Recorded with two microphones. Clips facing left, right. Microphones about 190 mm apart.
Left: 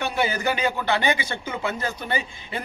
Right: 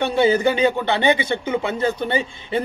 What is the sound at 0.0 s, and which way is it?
A man's voice, 25° right (ahead or behind).